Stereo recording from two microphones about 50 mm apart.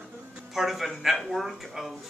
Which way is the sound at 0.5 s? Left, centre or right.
Centre.